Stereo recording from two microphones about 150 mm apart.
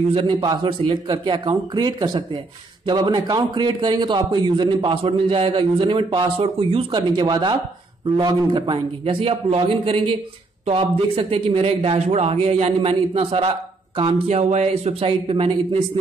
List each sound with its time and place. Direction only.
0.1 s a man's voice: 30° right (ahead or behind)